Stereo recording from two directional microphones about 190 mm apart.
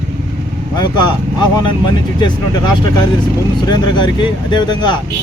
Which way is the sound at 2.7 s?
20° left (ahead or behind).